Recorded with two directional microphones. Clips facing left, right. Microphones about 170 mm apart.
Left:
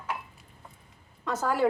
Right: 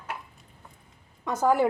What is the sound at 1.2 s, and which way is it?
Speech, 15° right (ahead or behind).